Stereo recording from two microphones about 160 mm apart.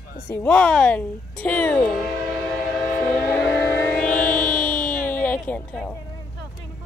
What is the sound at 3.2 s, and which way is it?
Music, 15° left (ahead or behind).